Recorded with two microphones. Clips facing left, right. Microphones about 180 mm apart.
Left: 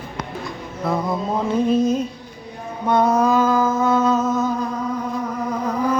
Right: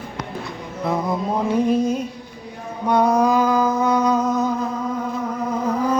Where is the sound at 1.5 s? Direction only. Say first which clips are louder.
Left 1 dB; 15° right (ahead or behind).